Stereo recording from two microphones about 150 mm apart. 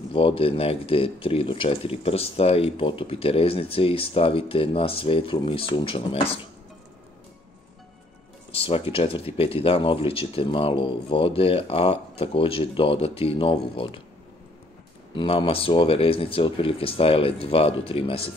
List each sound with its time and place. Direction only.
0.1 s speech: 35° left (ahead or behind)
8.5 s speech: 40° left (ahead or behind)
15.1 s speech: 35° left (ahead or behind)